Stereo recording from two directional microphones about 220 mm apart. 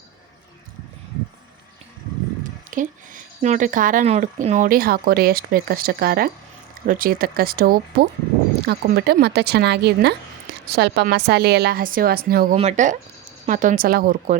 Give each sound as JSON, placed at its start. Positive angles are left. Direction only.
{"t": 2.6, "sound": "a woman's voice", "side_deg": -35}
{"t": 12.5, "sound": "speech", "side_deg": -30}